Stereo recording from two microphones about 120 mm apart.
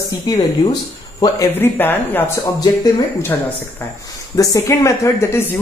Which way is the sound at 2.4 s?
35° left (ahead or behind).